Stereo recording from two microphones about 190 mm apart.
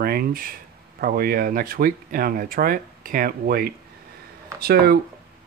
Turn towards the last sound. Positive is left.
turn(degrees=-55)  # may be behind; listen again after turning